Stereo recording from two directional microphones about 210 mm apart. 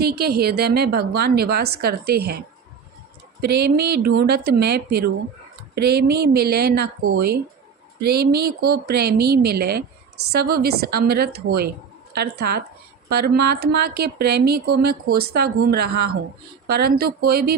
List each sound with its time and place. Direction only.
0.0 s a woman's voice: 50° right (ahead or behind)
3.4 s a woman's voice: 50° right (ahead or behind)